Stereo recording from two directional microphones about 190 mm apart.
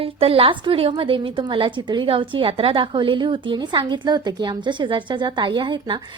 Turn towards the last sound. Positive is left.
turn(degrees=-25)  # may be behind; listen again after turning